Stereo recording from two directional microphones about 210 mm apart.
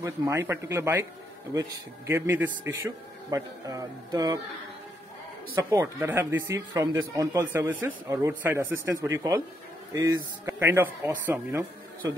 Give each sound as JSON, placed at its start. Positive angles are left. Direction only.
{"t": 0.0, "sound": "speech", "side_deg": -15}
{"t": 5.6, "sound": "speech", "side_deg": -15}